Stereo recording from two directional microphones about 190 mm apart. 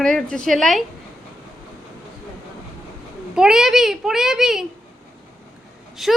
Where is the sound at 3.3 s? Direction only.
5° right (ahead or behind).